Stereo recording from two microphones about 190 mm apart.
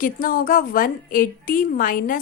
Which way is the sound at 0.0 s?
50° left (ahead or behind).